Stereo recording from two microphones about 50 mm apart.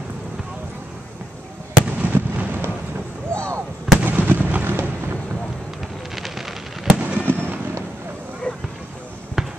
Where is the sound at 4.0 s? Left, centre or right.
Right.